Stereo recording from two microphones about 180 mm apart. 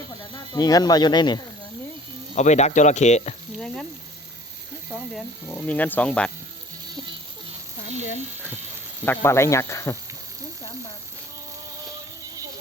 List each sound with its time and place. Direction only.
0.5 s speech: 20° left (ahead or behind)
2.3 s speech: 40° left (ahead or behind)
5.5 s speech: 10° left (ahead or behind)
9.0 s speech: 15° left (ahead or behind)